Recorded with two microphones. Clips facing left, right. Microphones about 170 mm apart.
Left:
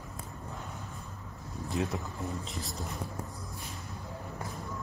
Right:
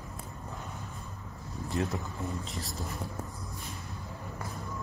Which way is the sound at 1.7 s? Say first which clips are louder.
Even; centre (ahead or behind).